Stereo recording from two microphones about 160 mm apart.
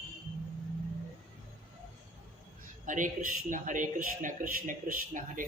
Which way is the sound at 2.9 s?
55° right (ahead or behind).